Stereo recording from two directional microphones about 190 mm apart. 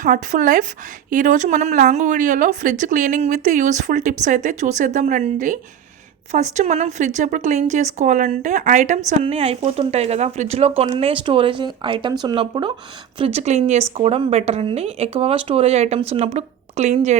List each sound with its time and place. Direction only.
0.0 s speech: 40° right (ahead or behind)